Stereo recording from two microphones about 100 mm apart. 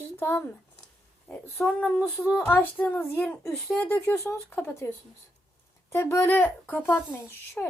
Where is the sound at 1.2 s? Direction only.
10° left (ahead or behind).